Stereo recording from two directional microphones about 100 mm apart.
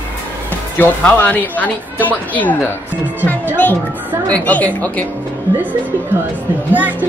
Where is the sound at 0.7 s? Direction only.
20° left (ahead or behind).